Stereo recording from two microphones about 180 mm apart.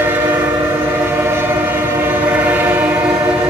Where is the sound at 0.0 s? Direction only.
10° right (ahead or behind).